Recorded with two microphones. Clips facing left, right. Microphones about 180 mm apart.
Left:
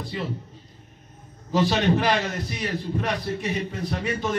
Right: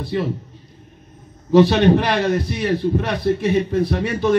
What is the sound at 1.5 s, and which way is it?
Speech, 60° right (ahead or behind).